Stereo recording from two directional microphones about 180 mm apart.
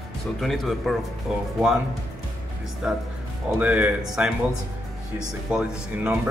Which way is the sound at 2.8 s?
5° right (ahead or behind).